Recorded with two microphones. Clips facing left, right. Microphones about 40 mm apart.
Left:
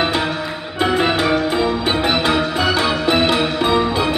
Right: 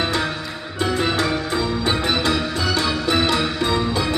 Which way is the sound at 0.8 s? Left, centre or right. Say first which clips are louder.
Left 4 dB; left.